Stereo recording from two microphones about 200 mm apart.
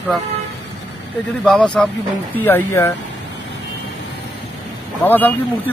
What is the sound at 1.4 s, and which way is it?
Speech, 5° left (ahead or behind).